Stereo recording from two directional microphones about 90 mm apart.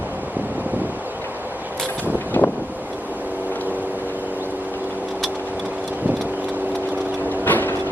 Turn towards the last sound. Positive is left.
turn(degrees=20)  # may be behind; listen again after turning